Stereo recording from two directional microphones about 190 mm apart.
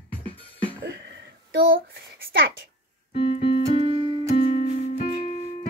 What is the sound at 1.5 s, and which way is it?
A child's voice, 55° right (ahead or behind).